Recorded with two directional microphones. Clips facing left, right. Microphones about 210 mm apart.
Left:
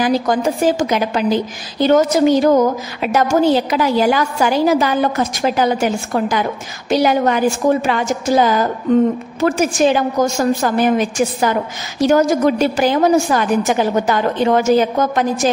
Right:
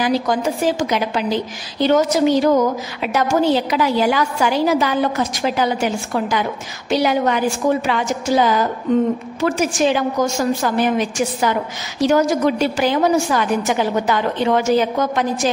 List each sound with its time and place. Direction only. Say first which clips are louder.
0.0 s a woman's voice: left 2 dB; 50° left (ahead or behind)